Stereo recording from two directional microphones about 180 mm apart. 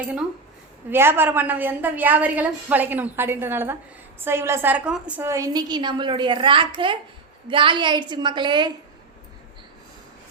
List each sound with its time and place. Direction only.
0.9 s a woman's voice: 15° right (ahead or behind)